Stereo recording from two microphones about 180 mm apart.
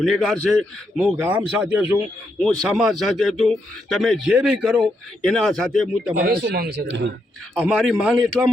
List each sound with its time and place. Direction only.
0.0 s speech: centre (ahead or behind)
6.2 s speech: 60° right (ahead or behind)
7.5 s speech: centre (ahead or behind)